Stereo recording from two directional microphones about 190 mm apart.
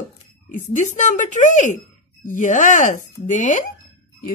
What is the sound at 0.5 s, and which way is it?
Speech, 40° left (ahead or behind).